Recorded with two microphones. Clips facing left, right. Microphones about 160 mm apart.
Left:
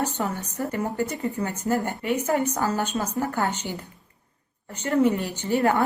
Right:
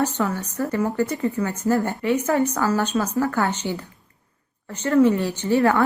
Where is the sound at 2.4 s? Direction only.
15° left (ahead or behind).